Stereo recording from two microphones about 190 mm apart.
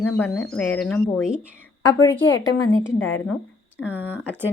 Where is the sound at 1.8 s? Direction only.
20° left (ahead or behind).